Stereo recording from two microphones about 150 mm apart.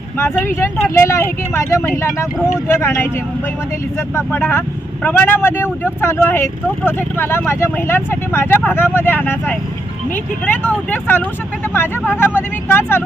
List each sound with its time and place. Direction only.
0.2 s speech: 15° left (ahead or behind)
4.1 s speech: 15° left (ahead or behind)